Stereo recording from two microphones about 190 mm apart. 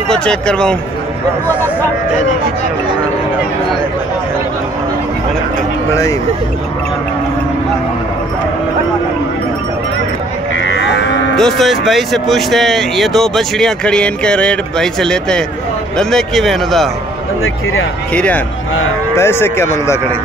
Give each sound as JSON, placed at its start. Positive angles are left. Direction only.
{"t": 0.1, "sound": "speech", "side_deg": 5}
{"t": 10.6, "sound": "moo", "side_deg": 75}
{"t": 11.3, "sound": "speech", "side_deg": 0}
{"t": 18.1, "sound": "speech", "side_deg": 5}